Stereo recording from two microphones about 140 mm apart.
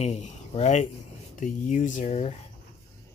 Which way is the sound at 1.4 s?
65° left (ahead or behind).